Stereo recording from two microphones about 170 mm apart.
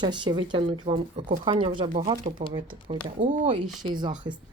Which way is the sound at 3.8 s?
25° right (ahead or behind).